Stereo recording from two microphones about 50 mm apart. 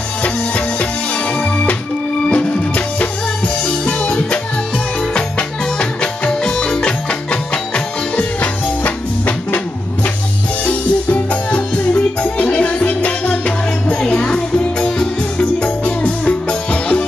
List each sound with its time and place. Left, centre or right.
1.4 s music: left
6.4 s music: centre; by 9.6 s left
10.6 s music: left